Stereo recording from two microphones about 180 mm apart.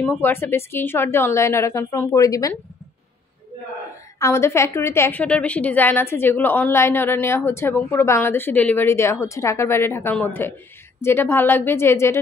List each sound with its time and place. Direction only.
0.0 s a woman's voice: 10° left (ahead or behind)
4.2 s a woman's voice: 15° left (ahead or behind)